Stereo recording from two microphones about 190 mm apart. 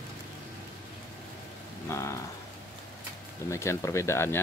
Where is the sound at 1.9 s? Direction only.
15° left (ahead or behind).